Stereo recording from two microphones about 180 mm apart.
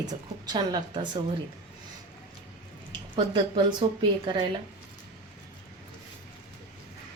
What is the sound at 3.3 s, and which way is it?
Speech, 25° right (ahead or behind).